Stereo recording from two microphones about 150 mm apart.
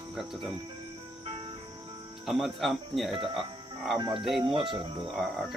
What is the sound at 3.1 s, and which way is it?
Speech, 35° right (ahead or behind).